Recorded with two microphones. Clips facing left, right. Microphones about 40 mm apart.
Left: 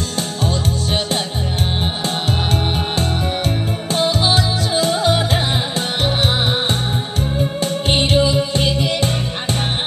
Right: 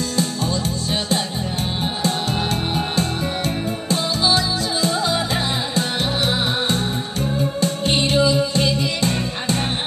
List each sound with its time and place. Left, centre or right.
3.9 s music: left